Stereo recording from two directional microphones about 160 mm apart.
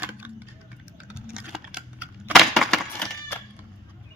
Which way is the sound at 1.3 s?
5° right (ahead or behind).